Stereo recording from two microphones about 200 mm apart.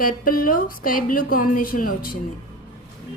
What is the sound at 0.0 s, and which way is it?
Speech, 45° left (ahead or behind).